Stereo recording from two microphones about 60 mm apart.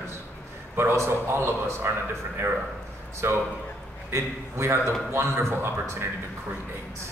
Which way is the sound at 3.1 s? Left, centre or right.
Right.